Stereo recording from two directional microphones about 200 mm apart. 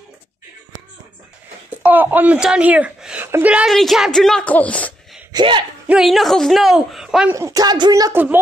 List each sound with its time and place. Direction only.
1.7 s speech: 10° right (ahead or behind)
5.3 s speech: 25° right (ahead or behind)
5.9 s speech: centre (ahead or behind)
7.3 s speech: 15° right (ahead or behind)